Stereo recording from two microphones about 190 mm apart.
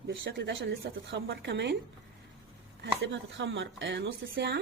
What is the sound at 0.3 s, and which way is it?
A woman's voice, 65° right (ahead or behind).